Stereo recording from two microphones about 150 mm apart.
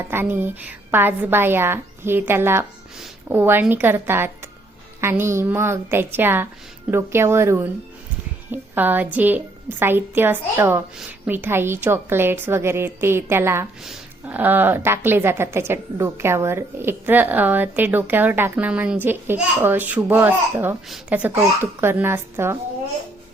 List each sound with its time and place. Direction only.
0.1 s a woman's voice: 15° right (ahead or behind)
8.7 s a woman's voice: 10° right (ahead or behind)